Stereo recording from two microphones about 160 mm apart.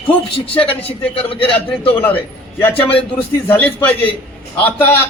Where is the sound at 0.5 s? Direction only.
35° left (ahead or behind).